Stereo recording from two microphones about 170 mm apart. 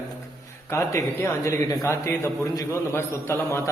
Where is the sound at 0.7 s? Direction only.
15° left (ahead or behind).